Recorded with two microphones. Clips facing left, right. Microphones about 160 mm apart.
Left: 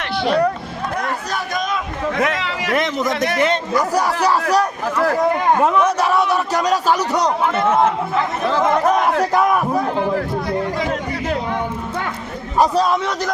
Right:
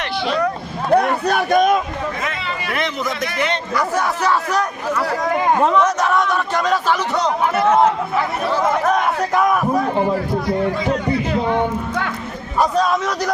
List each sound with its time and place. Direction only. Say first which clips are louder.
0.9 s a man's voice: right 10 dB; 65° right (ahead or behind)
2.1 s chatter: left 5 dB; 85° left
2.7 s a man's voice: left 5 dB; 45° left (ahead or behind)
5.5 s speech: even; 10° left (ahead or behind)
12.8 s speech: even; centre (ahead or behind)